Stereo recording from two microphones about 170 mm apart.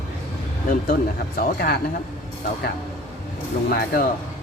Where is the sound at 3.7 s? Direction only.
60° left (ahead or behind).